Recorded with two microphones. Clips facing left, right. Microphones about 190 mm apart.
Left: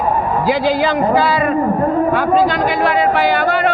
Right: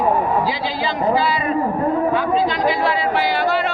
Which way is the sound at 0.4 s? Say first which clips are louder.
Left 8 dB; 60° left (ahead or behind).